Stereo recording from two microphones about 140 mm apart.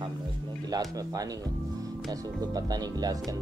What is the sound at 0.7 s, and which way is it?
Speech, 25° right (ahead or behind).